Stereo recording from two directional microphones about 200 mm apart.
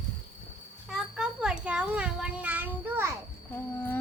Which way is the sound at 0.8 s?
Centre (ahead or behind).